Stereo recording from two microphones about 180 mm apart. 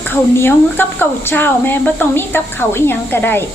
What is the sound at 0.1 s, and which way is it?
Speech, 10° left (ahead or behind).